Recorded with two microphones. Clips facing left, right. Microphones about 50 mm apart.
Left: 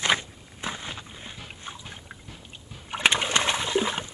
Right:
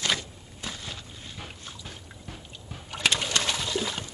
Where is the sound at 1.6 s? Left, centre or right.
Left.